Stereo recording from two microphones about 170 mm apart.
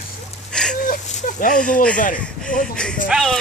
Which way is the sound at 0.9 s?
50° left (ahead or behind).